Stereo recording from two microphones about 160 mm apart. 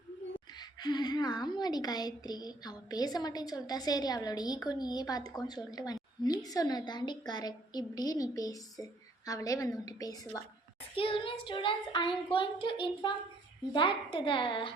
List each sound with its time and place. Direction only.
0.3 s a woman's voice: 25° left (ahead or behind)
10.9 s a child's voice: 35° left (ahead or behind)